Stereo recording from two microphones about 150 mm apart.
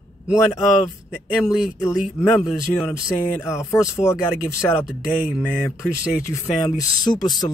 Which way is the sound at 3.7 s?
20° left (ahead or behind).